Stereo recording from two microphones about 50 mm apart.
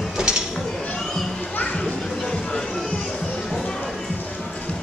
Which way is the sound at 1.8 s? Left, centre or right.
Centre.